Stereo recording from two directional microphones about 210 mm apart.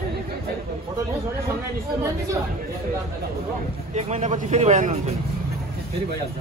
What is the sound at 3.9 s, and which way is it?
A man's voice, 30° right (ahead or behind).